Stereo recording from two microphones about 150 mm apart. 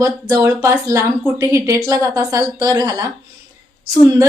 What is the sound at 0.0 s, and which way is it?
A woman's voice, 20° right (ahead or behind).